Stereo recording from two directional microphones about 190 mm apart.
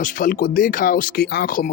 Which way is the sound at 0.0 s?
45° left (ahead or behind).